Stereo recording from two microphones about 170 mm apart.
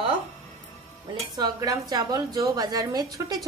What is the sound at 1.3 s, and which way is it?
A woman's voice, 20° right (ahead or behind).